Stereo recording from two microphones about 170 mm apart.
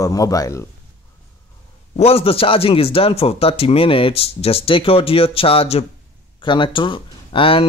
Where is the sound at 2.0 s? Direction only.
35° left (ahead or behind).